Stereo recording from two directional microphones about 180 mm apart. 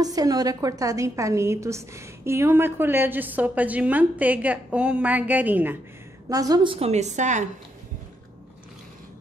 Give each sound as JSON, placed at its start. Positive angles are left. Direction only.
{"t": 0.0, "sound": "a woman's voice", "side_deg": -20}
{"t": 6.2, "sound": "a woman's voice", "side_deg": -20}